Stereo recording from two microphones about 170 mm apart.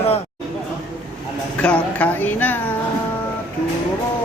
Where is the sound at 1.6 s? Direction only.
5° left (ahead or behind).